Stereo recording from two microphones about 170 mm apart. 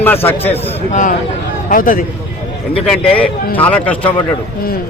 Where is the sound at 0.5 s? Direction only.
45° left (ahead or behind).